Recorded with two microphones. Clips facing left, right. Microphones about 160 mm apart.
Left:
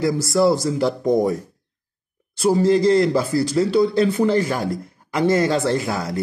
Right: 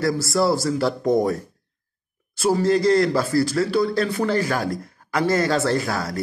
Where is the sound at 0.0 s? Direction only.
20° left (ahead or behind).